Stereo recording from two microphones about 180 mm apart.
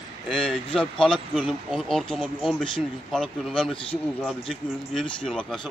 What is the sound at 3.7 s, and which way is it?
Speech, 30° left (ahead or behind).